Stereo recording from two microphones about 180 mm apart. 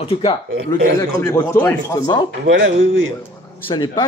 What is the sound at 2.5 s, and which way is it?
Speech, 90° right.